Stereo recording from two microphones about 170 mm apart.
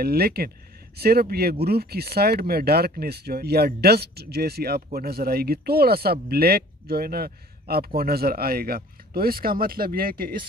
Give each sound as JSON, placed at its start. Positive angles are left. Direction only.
{"t": 0.0, "sound": "speech", "side_deg": -65}